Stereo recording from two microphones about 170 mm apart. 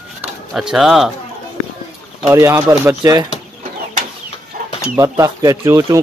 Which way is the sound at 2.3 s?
15° right (ahead or behind).